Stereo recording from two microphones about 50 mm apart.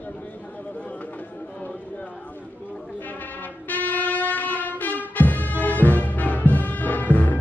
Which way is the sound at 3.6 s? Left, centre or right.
Left.